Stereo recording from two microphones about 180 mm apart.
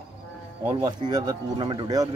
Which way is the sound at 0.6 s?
20° right (ahead or behind).